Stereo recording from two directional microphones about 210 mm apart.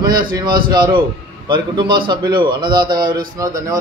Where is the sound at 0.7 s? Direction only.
20° right (ahead or behind).